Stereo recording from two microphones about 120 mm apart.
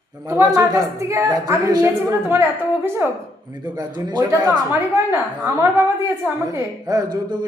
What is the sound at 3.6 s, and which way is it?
Speech, 35° right (ahead or behind).